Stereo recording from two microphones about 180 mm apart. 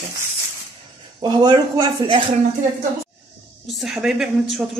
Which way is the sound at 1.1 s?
25° right (ahead or behind).